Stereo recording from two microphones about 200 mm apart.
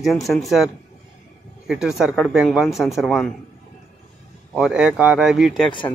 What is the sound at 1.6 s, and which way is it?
Speech, 5° right (ahead or behind).